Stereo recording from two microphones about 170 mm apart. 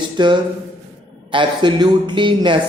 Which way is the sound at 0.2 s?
25° right (ahead or behind).